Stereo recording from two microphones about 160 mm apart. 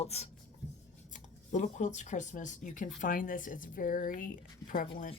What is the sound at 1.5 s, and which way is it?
Speech, 50° left (ahead or behind).